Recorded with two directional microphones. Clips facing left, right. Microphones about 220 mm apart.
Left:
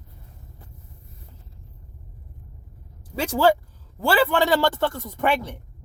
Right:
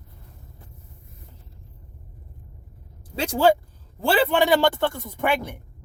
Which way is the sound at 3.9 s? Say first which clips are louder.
Even; 15° right (ahead or behind).